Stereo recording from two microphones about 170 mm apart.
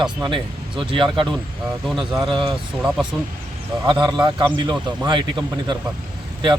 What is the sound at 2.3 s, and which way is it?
Speech, 30° right (ahead or behind).